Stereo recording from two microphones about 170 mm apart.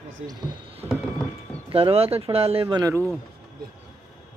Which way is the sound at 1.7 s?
35° right (ahead or behind).